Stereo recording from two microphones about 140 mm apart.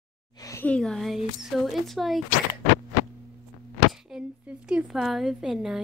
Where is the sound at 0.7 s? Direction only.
5° left (ahead or behind).